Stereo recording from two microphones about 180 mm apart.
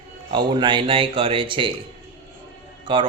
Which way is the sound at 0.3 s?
25° right (ahead or behind).